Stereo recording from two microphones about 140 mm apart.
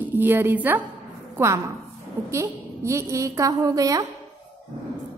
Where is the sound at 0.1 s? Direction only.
15° right (ahead or behind).